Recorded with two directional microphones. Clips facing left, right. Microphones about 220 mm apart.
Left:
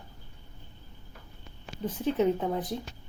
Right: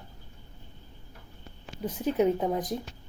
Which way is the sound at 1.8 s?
10° right (ahead or behind).